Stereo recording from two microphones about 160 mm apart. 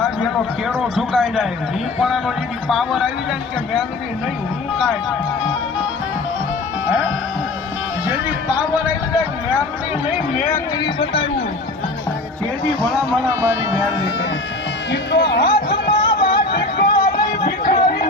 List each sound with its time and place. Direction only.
0.0 s a man's voice: centre (ahead or behind)
8.0 s a sound: 10° right (ahead or behind)
10.1 s speech: 5° left (ahead or behind)
10.5 s a man's voice: 25° left (ahead or behind)
15.1 s speech: 90° left
15.4 s a sound: 30° left (ahead or behind)
16.1 s music: 80° left
17.6 s chatter: 60° left (ahead or behind)